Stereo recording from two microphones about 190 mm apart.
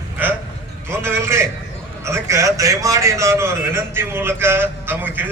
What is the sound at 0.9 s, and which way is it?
A man's voice, 15° right (ahead or behind).